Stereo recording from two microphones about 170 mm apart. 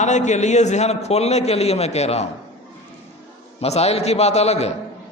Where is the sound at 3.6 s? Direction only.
40° left (ahead or behind).